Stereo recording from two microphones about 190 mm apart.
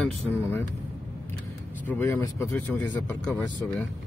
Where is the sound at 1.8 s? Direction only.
10° left (ahead or behind).